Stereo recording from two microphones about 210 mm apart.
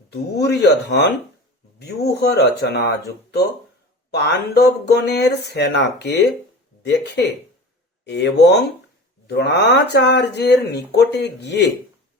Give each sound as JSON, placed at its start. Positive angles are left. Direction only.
{"t": 0.1, "sound": "speech", "side_deg": 50}
{"t": 4.1, "sound": "speech", "side_deg": 50}
{"t": 8.0, "sound": "speech", "side_deg": 55}